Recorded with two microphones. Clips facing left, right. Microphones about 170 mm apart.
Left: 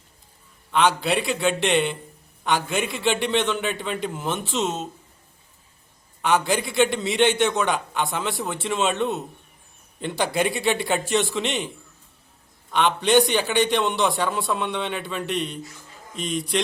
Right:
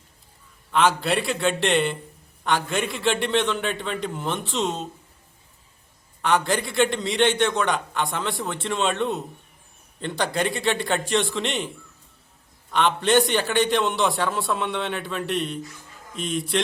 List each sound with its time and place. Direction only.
0.7 s a man's voice: centre (ahead or behind)
6.2 s a man's voice: 5° left (ahead or behind)
12.7 s a man's voice: centre (ahead or behind)